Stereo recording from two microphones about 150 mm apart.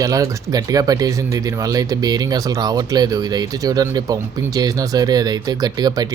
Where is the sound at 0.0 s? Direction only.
25° right (ahead or behind).